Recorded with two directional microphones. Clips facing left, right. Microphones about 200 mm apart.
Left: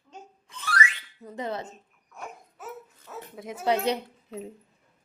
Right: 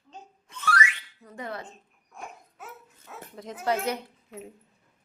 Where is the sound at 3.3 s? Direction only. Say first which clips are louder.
Left 2 dB; 10° left (ahead or behind).